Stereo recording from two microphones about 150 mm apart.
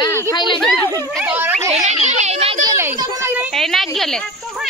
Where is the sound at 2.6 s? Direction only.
15° right (ahead or behind).